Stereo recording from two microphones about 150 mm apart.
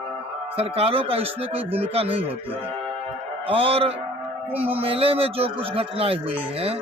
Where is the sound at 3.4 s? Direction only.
40° right (ahead or behind).